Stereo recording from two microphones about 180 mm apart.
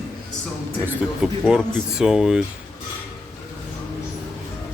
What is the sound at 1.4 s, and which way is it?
Speech, 5° right (ahead or behind).